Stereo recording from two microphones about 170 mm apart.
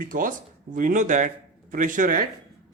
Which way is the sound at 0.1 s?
55° right (ahead or behind).